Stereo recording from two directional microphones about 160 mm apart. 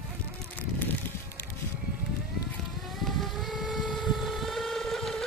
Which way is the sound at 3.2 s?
Centre (ahead or behind).